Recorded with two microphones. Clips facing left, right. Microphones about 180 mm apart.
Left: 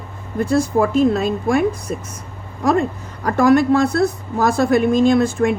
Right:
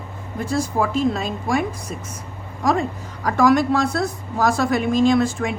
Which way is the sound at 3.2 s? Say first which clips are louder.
Left 3 dB; 55° left (ahead or behind).